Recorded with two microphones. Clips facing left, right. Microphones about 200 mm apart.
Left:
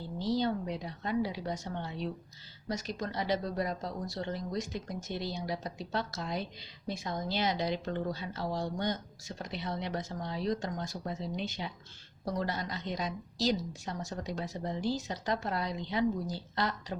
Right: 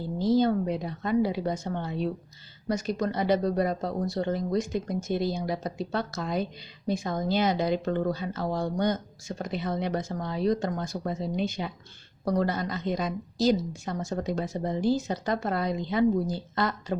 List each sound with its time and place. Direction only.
0.2 s a woman's voice: 50° right (ahead or behind)